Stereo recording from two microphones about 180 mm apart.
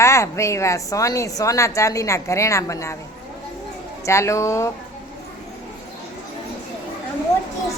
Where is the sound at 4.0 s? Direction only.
15° left (ahead or behind).